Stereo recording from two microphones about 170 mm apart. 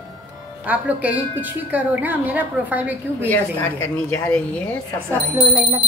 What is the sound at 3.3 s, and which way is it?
A woman's voice, 15° left (ahead or behind).